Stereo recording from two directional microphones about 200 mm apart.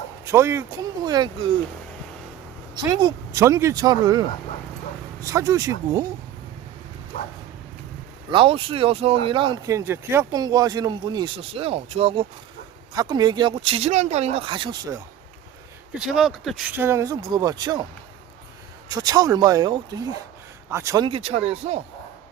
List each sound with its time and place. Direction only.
0.3 s speech: 15° right (ahead or behind)
2.7 s speech: 20° right (ahead or behind)
8.3 s speech: 25° right (ahead or behind)
16.0 s speech: centre (ahead or behind); by 17.8 s 20° right (ahead or behind)
18.9 s speech: 20° right (ahead or behind)